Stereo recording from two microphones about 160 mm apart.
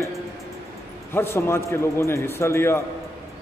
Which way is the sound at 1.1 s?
15° left (ahead or behind).